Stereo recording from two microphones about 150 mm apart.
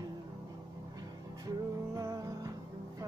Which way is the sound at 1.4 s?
25° right (ahead or behind).